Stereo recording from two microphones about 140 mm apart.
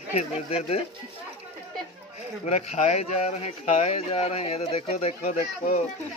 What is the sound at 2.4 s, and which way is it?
Speech, 50° left (ahead or behind).